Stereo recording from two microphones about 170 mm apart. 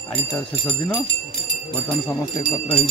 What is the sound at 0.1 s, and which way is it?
Speech, 10° left (ahead or behind).